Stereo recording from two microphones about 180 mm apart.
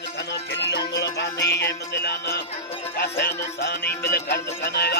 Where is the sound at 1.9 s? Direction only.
65° left (ahead or behind).